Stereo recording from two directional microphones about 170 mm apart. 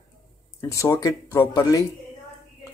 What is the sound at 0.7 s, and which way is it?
Speech, 20° left (ahead or behind).